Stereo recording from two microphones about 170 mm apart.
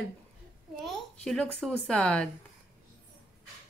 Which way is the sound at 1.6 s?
5° left (ahead or behind).